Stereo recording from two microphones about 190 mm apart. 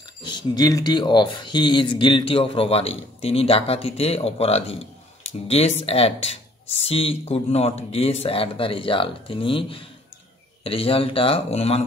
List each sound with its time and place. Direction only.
0.2 s speech: 25° left (ahead or behind)